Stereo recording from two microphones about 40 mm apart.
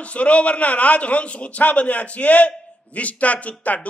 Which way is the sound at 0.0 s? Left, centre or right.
Left.